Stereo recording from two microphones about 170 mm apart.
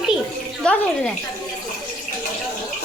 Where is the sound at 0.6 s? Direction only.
5° left (ahead or behind).